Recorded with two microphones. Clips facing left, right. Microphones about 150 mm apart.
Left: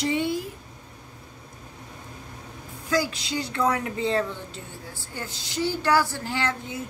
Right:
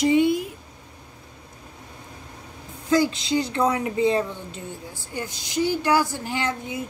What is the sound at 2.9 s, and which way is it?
A woman's voice, 25° right (ahead or behind).